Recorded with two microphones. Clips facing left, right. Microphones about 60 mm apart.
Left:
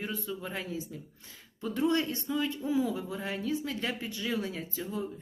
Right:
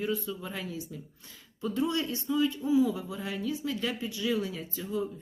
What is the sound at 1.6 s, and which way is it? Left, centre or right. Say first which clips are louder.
Speech: left 1 dB; left.